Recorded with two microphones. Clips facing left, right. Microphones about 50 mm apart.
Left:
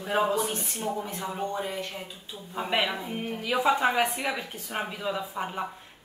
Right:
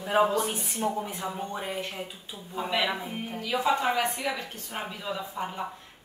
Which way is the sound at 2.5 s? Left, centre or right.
Centre.